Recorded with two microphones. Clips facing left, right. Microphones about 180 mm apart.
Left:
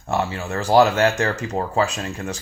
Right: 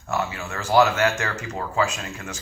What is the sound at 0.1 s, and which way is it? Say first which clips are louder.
Speech: left 4 dB; 35° left (ahead or behind).